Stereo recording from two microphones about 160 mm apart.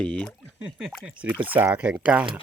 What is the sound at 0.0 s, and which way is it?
Speech, 5° left (ahead or behind).